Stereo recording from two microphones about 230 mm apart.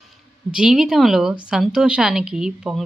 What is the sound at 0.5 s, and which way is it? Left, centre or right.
Speech, centre.